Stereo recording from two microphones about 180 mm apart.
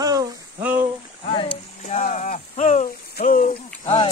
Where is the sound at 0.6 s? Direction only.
10° right (ahead or behind).